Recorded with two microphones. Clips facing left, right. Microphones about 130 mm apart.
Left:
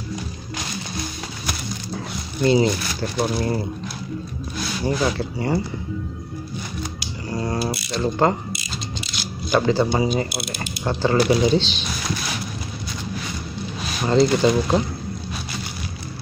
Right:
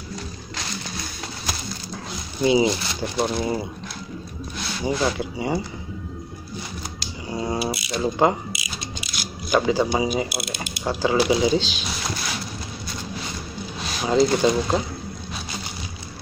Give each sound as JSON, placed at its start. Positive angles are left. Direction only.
{"t": 2.4, "sound": "speech", "side_deg": -10}
{"t": 2.7, "sound": "speech", "side_deg": -20}
{"t": 5.0, "sound": "speech", "side_deg": -5}
{"t": 7.2, "sound": "typing", "side_deg": -10}
{"t": 7.7, "sound": "speech", "side_deg": -10}
{"t": 14.0, "sound": "speech", "side_deg": -5}